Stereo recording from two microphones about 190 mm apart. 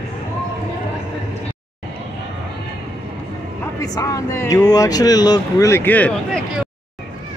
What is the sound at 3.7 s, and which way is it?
Speech, 20° left (ahead or behind).